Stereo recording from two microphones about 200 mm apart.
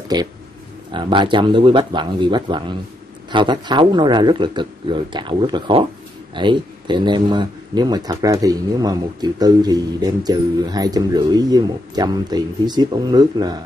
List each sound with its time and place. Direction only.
0.1 s speech: 20° right (ahead or behind)